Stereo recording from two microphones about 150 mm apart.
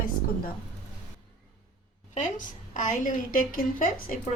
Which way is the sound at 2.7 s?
60° left (ahead or behind).